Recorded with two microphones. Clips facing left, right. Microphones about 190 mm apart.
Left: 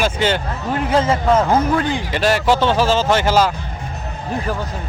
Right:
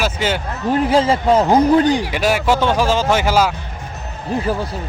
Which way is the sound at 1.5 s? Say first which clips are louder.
Right 5 dB; 15° right (ahead or behind).